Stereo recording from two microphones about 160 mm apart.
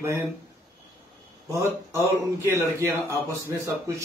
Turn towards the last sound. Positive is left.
turn(degrees=-15)  # may be behind; listen again after turning